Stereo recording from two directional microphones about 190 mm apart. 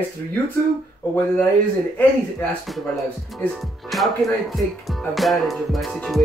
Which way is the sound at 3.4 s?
Centre (ahead or behind).